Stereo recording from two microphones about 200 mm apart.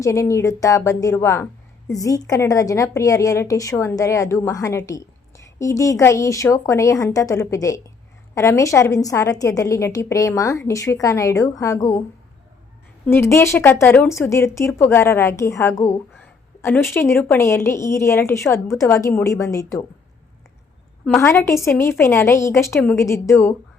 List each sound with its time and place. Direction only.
0.0 s speech: 15° left (ahead or behind)
13.1 s speech: 10° left (ahead or behind)
21.2 s speech: 10° left (ahead or behind)